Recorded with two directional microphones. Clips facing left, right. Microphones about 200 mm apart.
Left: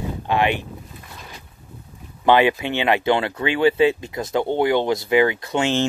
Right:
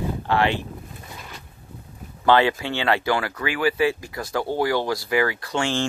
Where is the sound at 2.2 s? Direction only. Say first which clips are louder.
Left 2 dB; 15° left (ahead or behind).